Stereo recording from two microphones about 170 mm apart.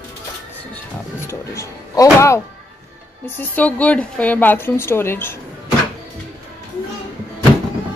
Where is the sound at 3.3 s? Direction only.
10° left (ahead or behind).